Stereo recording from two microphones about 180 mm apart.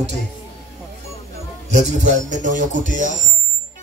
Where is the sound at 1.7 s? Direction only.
40° right (ahead or behind).